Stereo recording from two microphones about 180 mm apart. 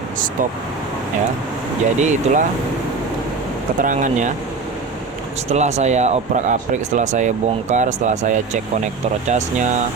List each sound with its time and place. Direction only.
2.0 s speech: 40° right (ahead or behind)
3.8 s speech: 45° right (ahead or behind)
5.5 s speech: 40° right (ahead or behind)